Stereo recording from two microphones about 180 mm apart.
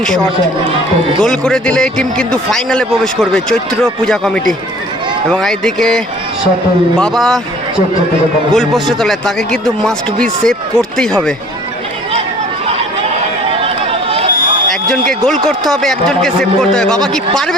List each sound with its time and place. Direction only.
1.2 s a man's voice: 5° left (ahead or behind)
8.5 s a man's voice: centre (ahead or behind)
13.5 s chatter: 30° right (ahead or behind)
15.3 s a man's voice: centre (ahead or behind)